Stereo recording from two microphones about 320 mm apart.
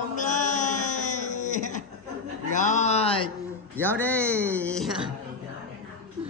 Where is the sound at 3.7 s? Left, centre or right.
Centre.